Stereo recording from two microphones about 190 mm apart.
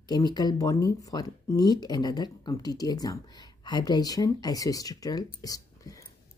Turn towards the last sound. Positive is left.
turn(degrees=20)  # may be behind; listen again after turning